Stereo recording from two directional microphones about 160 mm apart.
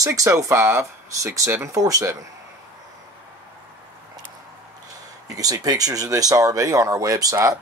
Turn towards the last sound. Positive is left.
turn(degrees=-20)  # may be behind; listen again after turning